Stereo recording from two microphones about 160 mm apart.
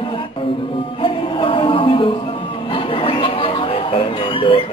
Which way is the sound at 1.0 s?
35° left (ahead or behind).